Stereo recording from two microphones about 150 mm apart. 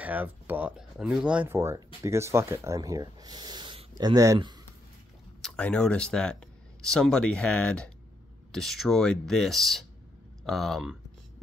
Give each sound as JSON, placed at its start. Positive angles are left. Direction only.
{"t": 0.0, "sound": "speech", "side_deg": -10}
{"t": 5.4, "sound": "speech", "side_deg": 5}